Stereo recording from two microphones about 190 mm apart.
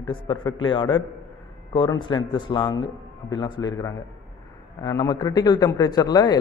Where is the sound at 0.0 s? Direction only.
25° left (ahead or behind).